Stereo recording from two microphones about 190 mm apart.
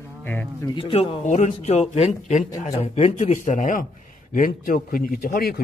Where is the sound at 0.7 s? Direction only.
20° left (ahead or behind).